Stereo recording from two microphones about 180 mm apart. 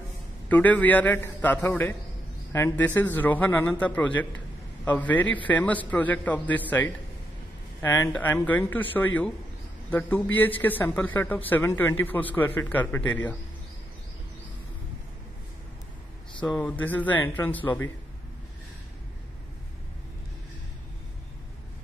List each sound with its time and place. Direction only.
0.5 s a man's voice: 10° left (ahead or behind)
7.8 s a man's voice: 10° left (ahead or behind)
16.4 s a man's voice: 5° left (ahead or behind)